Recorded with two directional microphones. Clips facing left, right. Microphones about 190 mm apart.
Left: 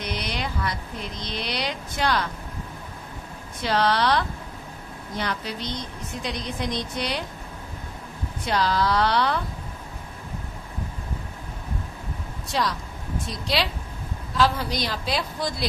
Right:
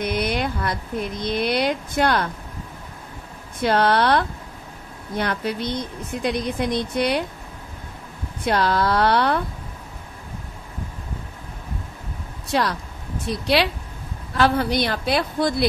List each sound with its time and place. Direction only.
0.0 s speech: 55° right (ahead or behind)
3.6 s a woman's voice: 55° right (ahead or behind)
8.5 s a woman's voice: 55° right (ahead or behind)
12.4 s a woman's voice: 60° right (ahead or behind)